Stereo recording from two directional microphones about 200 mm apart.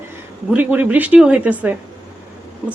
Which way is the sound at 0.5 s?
10° right (ahead or behind).